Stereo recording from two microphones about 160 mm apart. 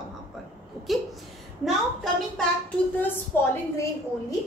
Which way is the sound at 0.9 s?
Centre (ahead or behind).